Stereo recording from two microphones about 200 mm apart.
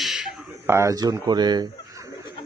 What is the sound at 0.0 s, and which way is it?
A man's voice, 5° right (ahead or behind).